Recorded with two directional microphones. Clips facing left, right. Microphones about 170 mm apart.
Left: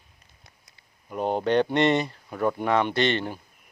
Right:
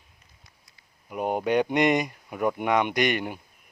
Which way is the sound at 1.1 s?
10° right (ahead or behind).